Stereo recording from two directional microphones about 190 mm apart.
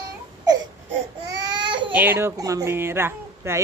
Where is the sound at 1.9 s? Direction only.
10° right (ahead or behind).